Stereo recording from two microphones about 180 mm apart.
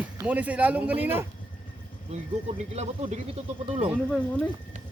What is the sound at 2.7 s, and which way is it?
Speech, 35° right (ahead or behind).